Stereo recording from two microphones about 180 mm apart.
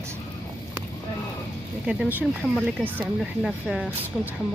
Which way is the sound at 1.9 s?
5° right (ahead or behind).